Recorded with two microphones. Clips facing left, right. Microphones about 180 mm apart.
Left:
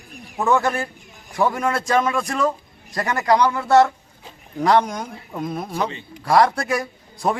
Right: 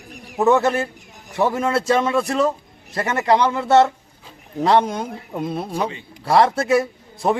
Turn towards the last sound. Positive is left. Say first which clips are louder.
# right 2 dB
turn(degrees=-25)  # may be behind; listen again after turning